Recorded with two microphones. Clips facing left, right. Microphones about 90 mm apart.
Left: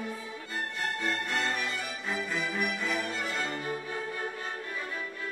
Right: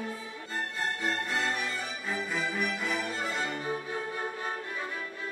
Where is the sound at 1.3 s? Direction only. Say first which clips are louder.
Left 1 dB; centre (ahead or behind).